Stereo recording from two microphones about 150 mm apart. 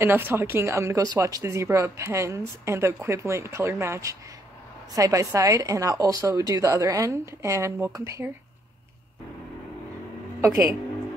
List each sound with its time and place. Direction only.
0.0 s speech: 15° right (ahead or behind)
10.4 s speech: 20° right (ahead or behind)